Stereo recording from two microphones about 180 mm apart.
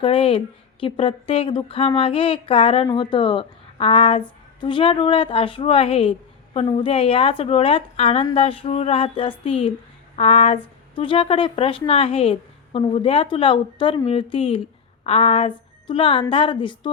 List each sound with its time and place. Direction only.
0.0 s a woman's voice: 30° left (ahead or behind)